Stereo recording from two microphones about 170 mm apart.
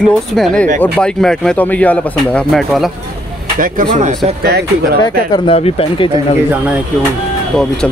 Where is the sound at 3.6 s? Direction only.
50° right (ahead or behind).